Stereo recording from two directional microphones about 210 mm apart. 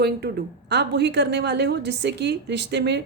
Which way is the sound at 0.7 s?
55° right (ahead or behind).